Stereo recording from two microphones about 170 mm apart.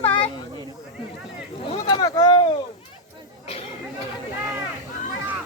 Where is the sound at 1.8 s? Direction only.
25° left (ahead or behind).